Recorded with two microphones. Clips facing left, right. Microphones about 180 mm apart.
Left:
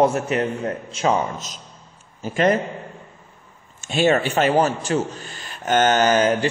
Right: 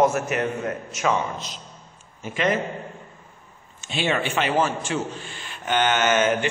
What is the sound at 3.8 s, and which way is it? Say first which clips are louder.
A man's voice: left 6 dB; 45° left (ahead or behind).